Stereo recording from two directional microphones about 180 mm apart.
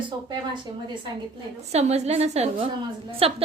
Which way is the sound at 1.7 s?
35° right (ahead or behind).